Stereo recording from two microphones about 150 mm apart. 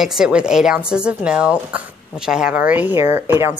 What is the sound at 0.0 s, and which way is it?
Speech, 5° right (ahead or behind).